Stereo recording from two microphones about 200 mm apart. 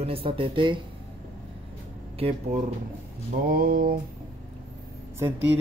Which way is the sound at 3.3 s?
45° right (ahead or behind).